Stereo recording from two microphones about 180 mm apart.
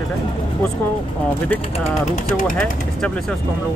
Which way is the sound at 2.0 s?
40° left (ahead or behind).